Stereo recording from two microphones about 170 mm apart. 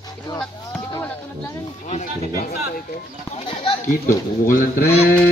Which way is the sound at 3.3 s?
30° left (ahead or behind).